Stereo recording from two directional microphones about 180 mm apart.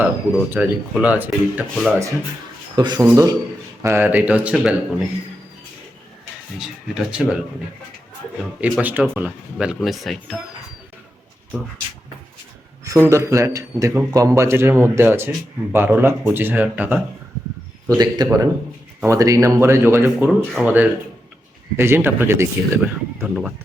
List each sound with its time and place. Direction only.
0.0 s a man's voice: 10° right (ahead or behind)
2.7 s a man's voice: 25° right (ahead or behind); by 5.0 s 5° right (ahead or behind)
6.6 s speech: 5° right (ahead or behind)
8.8 s speech: 10° right (ahead or behind)
12.8 s a man's voice: 15° right (ahead or behind)
17.8 s a man's voice: 20° right (ahead or behind)